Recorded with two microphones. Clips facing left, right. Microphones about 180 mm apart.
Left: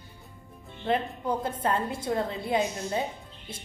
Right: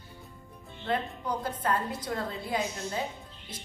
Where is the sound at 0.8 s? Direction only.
25° left (ahead or behind).